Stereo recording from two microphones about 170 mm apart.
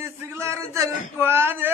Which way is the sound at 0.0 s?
15° right (ahead or behind).